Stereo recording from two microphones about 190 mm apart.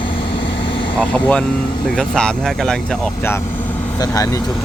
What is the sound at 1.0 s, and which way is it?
Speech, 5° left (ahead or behind).